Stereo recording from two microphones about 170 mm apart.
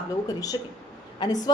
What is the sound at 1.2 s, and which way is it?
Speech, 25° left (ahead or behind).